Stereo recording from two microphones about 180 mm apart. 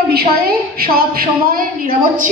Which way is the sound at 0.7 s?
55° right (ahead or behind).